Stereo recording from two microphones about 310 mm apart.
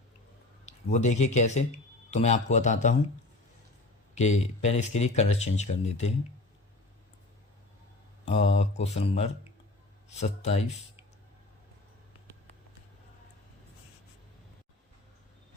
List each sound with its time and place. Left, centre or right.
0.6 s speech: left
4.1 s speech: left
8.4 s speech: centre